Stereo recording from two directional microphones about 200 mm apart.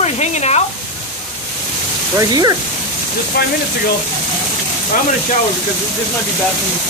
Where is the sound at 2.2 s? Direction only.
20° right (ahead or behind).